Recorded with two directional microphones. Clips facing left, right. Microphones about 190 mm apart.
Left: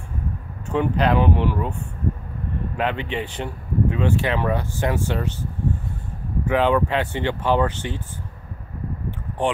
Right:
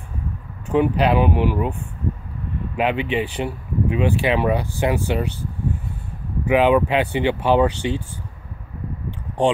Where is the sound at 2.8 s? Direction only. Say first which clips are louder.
Right 5 dB; 15° right (ahead or behind).